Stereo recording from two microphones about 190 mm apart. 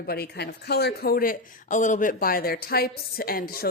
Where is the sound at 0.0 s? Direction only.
55° left (ahead or behind).